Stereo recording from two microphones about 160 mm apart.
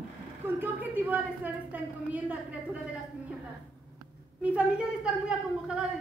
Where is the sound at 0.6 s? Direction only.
10° right (ahead or behind).